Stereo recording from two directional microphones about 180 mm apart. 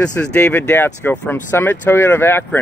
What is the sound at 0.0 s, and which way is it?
Speech, 10° left (ahead or behind).